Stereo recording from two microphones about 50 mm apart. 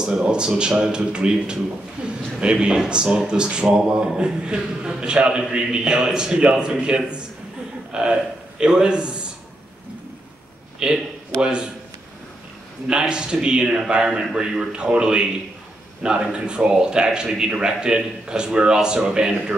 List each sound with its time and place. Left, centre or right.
0.3 s a man's voice: centre
10.8 s a man's voice: centre
13.1 s a man's voice: centre